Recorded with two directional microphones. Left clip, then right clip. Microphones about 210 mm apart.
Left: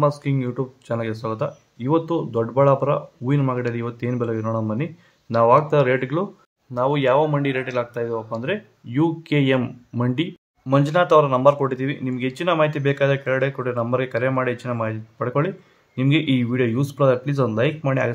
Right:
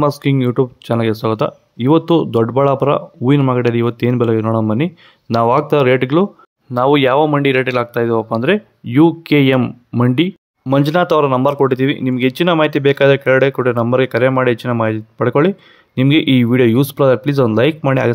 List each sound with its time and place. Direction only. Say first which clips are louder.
0.0 s speech: right 6 dB; 45° right (ahead or behind)